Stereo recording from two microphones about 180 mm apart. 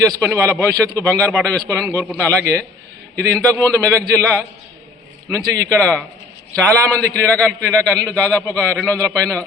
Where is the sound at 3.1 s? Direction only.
15° right (ahead or behind).